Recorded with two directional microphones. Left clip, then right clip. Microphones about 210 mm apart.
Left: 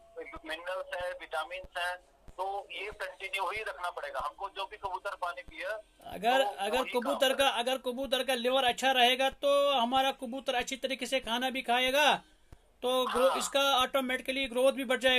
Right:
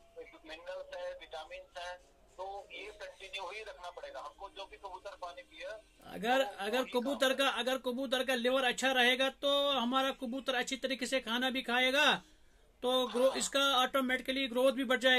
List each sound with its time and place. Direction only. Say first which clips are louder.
0.2 s speech: left 9 dB; 25° left (ahead or behind)
6.0 s a man's voice: left 4 dB; 15° right (ahead or behind)
13.0 s speech: left 4 dB; 20° left (ahead or behind)
13.5 s a man's voice: left 3 dB; 15° right (ahead or behind)